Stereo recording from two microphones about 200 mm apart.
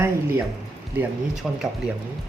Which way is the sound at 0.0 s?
10° right (ahead or behind).